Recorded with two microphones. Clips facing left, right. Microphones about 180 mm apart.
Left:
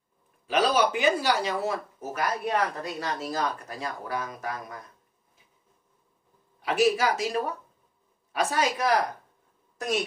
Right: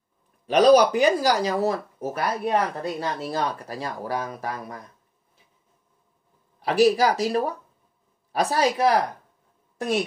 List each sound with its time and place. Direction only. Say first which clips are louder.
0.5 s speech: right 8 dB; 40° right (ahead or behind)
6.6 s speech: right 5 dB; 35° right (ahead or behind)